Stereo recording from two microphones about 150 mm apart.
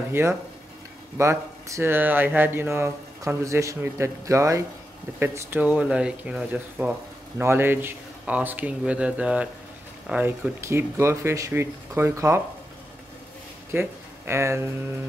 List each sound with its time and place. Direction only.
0.1 s speech: 15° right (ahead or behind)
13.7 s speech: 15° right (ahead or behind)